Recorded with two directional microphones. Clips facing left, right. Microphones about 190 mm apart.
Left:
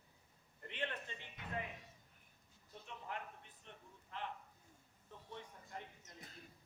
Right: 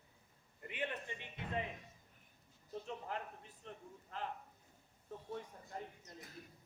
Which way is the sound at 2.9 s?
35° right (ahead or behind).